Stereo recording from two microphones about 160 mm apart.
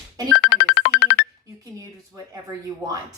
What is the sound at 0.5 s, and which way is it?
Music, 80° left.